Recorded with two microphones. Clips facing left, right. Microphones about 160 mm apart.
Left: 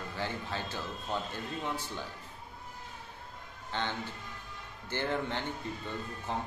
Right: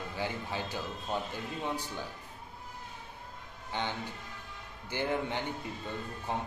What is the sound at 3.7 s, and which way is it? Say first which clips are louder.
A man's voice: even; 15° right (ahead or behind).